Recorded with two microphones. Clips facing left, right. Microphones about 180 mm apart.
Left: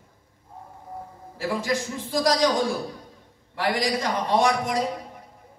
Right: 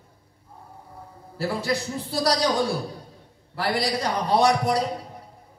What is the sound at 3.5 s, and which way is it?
A man's voice, 35° right (ahead or behind).